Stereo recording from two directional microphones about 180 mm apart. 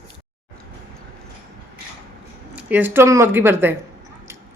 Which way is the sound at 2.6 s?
10° right (ahead or behind).